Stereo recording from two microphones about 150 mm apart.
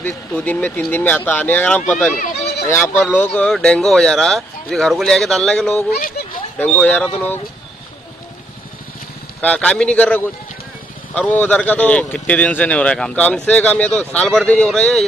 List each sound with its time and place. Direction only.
0.0 s speech: 10° left (ahead or behind)
2.1 s a sound: 90° left
2.7 s speech: 10° left (ahead or behind)
5.9 s a sound: 65° left (ahead or behind)
6.6 s speech: 10° left (ahead or behind)
9.4 s speech: 10° left (ahead or behind)